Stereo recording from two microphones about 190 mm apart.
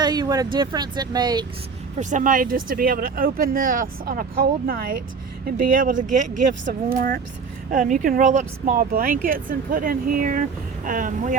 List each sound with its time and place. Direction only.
0.0 s speech: 20° right (ahead or behind)
2.0 s speech: 40° right (ahead or behind)
7.7 s speech: 45° right (ahead or behind)